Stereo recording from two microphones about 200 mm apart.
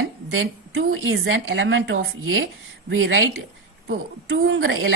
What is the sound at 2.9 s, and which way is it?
A woman's voice, 70° right (ahead or behind).